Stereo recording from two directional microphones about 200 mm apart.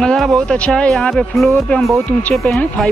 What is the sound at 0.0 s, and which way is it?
Speech, 5° left (ahead or behind).